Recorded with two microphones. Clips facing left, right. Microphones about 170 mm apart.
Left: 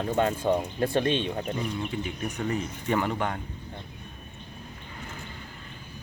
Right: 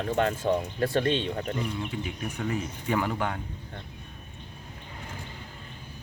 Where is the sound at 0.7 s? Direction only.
20° left (ahead or behind).